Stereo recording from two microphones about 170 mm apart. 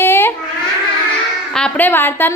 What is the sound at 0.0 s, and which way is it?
Babbling, 15° left (ahead or behind).